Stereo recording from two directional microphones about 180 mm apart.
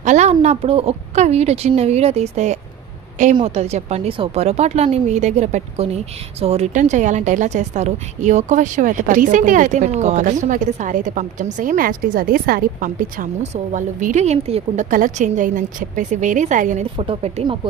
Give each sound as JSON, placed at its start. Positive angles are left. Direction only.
{"t": 0.0, "sound": "a woman's voice", "side_deg": -40}
{"t": 17.0, "sound": "speech", "side_deg": -35}